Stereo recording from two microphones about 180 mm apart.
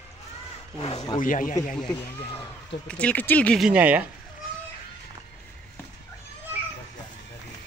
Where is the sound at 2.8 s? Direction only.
5° left (ahead or behind).